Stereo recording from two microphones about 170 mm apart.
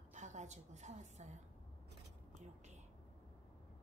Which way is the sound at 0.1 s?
45° right (ahead or behind).